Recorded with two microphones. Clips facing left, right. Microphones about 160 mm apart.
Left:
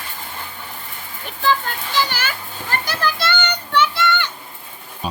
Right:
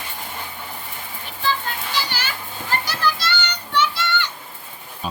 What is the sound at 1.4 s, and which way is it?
Children playing, 50° left (ahead or behind).